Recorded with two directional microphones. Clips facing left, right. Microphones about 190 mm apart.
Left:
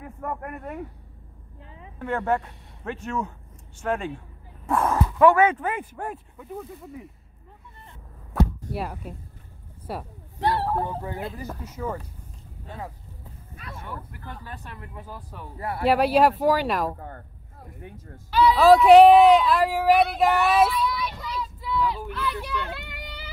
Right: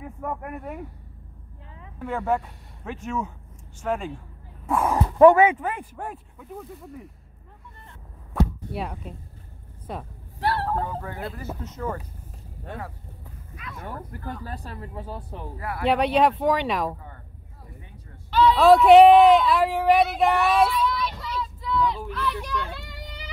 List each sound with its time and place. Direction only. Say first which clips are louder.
0.0 s speech: right 1 dB; 5° right (ahead or behind)
2.0 s speech: even; centre (ahead or behind)
5.6 s speech: left 1 dB; centre (ahead or behind)
8.3 s arrow: left 1 dB; 5° left (ahead or behind)
9.9 s speech: left 1 dB; 5° left (ahead or behind)
13.7 s speech: right 3 dB; 40° right (ahead or behind)
15.8 s speech: left 1 dB; 5° left (ahead or behind)
17.8 s speech: left 7 dB; 45° left (ahead or behind)
18.3 s speech: even; 5° left (ahead or behind)